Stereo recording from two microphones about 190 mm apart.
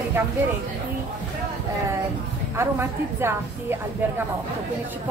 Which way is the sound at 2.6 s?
15° right (ahead or behind).